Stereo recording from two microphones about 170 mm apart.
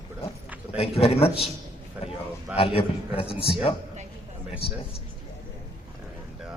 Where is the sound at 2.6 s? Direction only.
35° left (ahead or behind).